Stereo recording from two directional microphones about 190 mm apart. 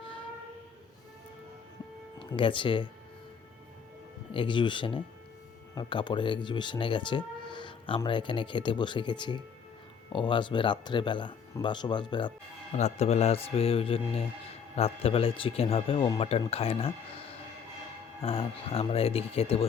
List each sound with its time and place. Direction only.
0.0 s train: 25° left (ahead or behind)
2.1 s speech: 25° left (ahead or behind)
4.3 s speech: 25° left (ahead or behind)
12.7 s a man's voice: 35° left (ahead or behind)